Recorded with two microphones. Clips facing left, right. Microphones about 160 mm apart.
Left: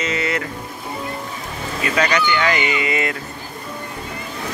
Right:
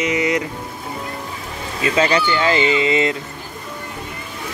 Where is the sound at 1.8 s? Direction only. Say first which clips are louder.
Right 2 dB; 25° right (ahead or behind).